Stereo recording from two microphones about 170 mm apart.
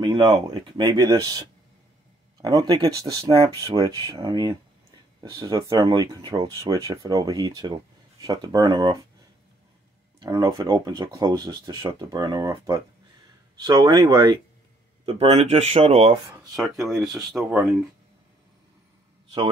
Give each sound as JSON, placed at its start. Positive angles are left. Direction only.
{"t": 0.0, "sound": "speech", "side_deg": -25}
{"t": 2.4, "sound": "speech", "side_deg": -20}
{"t": 5.6, "sound": "speech", "side_deg": -20}
{"t": 10.2, "sound": "speech", "side_deg": -25}
{"t": 15.0, "sound": "speech", "side_deg": -35}
{"t": 16.6, "sound": "speech", "side_deg": 0}